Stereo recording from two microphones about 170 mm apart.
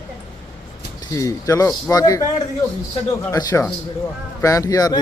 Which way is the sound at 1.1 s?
20° left (ahead or behind).